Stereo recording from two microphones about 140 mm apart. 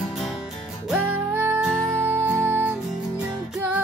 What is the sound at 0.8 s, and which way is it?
Music, 10° right (ahead or behind).